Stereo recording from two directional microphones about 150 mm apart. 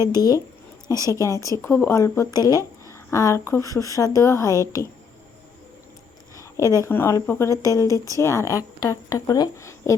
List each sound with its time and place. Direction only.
0.0 s speech: 25° left (ahead or behind)
6.3 s a sound: 20° left (ahead or behind)
6.7 s speech: 15° left (ahead or behind)